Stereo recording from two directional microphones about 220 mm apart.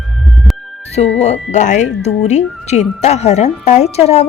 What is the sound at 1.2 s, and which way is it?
A woman's voice, 30° left (ahead or behind).